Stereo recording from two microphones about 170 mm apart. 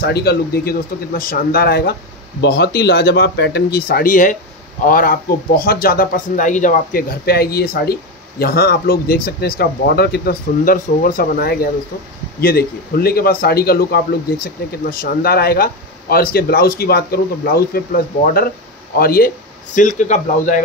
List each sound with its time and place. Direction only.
0.0 s a man's voice: 70° left (ahead or behind); by 20.6 s 45° left (ahead or behind)